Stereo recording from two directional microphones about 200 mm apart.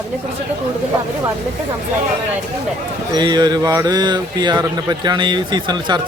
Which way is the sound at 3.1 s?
20° right (ahead or behind).